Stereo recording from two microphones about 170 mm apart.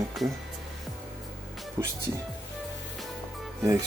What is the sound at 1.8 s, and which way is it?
Speech, 15° right (ahead or behind).